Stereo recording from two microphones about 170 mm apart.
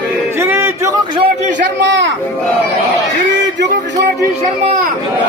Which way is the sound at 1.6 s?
90° right.